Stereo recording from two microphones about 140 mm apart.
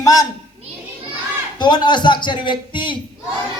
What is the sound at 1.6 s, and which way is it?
A man's voice, 30° left (ahead or behind).